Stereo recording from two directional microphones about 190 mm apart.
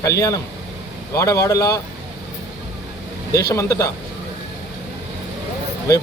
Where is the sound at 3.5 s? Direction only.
15° left (ahead or behind).